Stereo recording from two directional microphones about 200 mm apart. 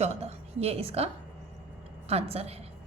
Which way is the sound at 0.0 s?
30° right (ahead or behind).